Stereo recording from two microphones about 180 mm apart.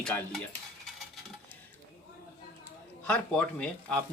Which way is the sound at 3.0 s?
5° left (ahead or behind).